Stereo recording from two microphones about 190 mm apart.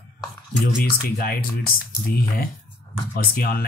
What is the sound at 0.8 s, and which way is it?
Speech, 50° left (ahead or behind).